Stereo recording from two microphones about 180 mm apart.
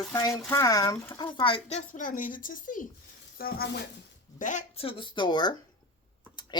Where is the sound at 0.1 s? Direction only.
15° left (ahead or behind); by 3.7 s 55° left (ahead or behind).